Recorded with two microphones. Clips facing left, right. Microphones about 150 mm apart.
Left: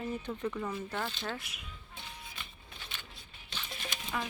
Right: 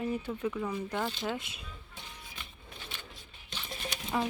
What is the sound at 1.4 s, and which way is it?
Speech, 25° right (ahead or behind).